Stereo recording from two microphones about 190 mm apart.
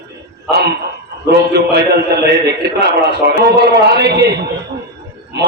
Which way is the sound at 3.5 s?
60° right (ahead or behind).